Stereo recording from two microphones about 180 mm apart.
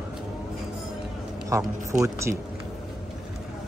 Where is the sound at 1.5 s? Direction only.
20° right (ahead or behind).